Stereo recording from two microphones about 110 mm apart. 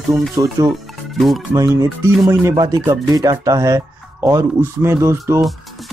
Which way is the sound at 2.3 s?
30° right (ahead or behind).